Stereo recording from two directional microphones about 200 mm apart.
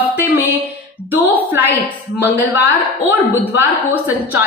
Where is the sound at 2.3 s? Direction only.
10° right (ahead or behind).